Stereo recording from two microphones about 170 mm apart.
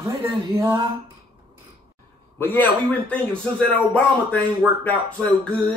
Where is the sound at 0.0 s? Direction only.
15° right (ahead or behind).